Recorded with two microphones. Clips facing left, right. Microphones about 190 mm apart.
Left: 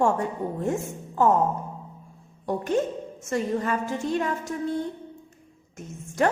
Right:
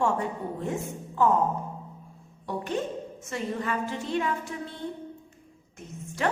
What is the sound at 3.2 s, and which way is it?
A woman's voice, 45° left (ahead or behind).